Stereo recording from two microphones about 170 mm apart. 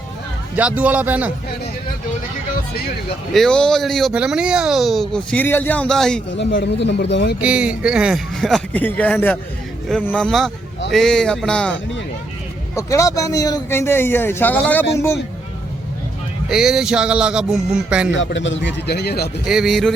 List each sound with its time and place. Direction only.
0.5 s a man's voice: 10° right (ahead or behind)
3.3 s speech: 5° left (ahead or behind)
6.3 s speech: 90° left
7.4 s speech: 5° right (ahead or behind)
12.7 s a man's voice: 20° left (ahead or behind)
16.5 s speech: 5° right (ahead or behind)
18.1 s a man's voice: 90° left; by 19.3 s 75° left (ahead or behind)
19.5 s speech: centre (ahead or behind)